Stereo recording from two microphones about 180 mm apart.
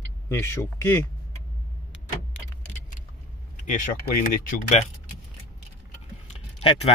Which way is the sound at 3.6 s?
45° left (ahead or behind).